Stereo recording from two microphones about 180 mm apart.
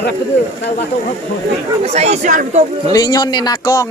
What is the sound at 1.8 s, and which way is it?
Speech, 35° right (ahead or behind).